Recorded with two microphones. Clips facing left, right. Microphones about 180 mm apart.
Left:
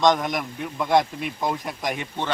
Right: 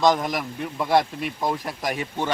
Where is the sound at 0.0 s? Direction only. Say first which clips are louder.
Even; centre (ahead or behind).